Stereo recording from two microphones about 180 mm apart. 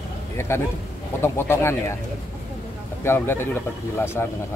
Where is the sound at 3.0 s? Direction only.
15° left (ahead or behind).